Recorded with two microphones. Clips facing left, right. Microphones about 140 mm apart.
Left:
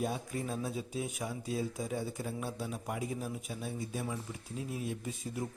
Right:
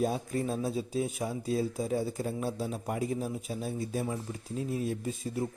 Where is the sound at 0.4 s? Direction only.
30° right (ahead or behind).